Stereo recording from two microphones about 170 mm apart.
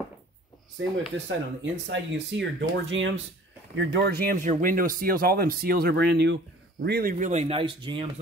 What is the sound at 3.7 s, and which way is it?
Speech, 70° right (ahead or behind).